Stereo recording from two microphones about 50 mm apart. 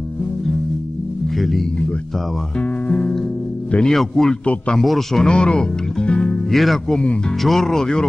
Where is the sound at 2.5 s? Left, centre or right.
Left.